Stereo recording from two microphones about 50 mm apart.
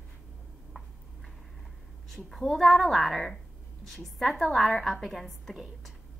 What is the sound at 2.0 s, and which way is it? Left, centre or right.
A woman's voice, centre.